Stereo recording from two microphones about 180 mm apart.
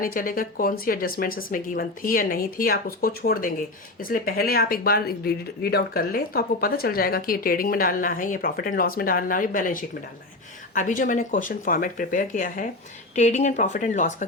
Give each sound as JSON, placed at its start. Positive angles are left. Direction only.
{"t": 0.0, "sound": "speech", "side_deg": 50}